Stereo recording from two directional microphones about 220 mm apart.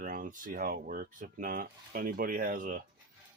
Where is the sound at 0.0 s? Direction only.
40° right (ahead or behind).